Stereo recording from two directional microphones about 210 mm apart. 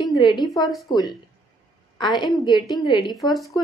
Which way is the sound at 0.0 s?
20° left (ahead or behind).